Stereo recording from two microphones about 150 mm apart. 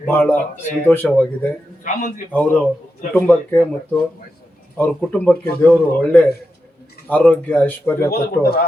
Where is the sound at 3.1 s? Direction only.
10° left (ahead or behind).